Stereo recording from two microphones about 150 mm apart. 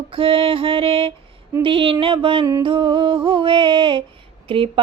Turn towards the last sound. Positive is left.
turn(degrees=-35)  # may be behind; listen again after turning